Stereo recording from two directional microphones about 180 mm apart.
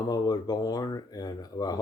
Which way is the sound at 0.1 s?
20° left (ahead or behind).